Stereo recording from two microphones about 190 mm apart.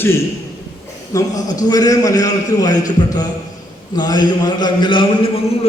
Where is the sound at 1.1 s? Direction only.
20° left (ahead or behind).